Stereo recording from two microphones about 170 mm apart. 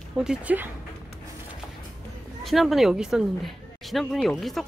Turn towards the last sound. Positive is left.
turn(degrees=0)  # may be behind; listen again after turning